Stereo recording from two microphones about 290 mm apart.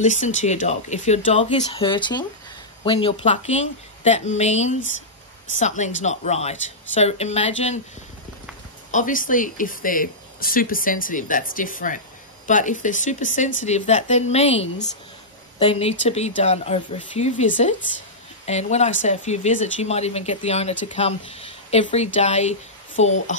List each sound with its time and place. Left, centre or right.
0.0 s speech: left
8.9 s speech: left